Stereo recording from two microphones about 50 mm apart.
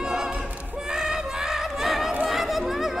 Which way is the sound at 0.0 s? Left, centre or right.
Centre.